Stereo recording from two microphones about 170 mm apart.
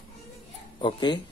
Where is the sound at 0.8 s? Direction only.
25° left (ahead or behind).